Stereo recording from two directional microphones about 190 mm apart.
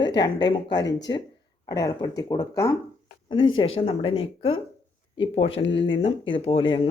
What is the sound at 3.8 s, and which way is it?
Speech, 30° left (ahead or behind).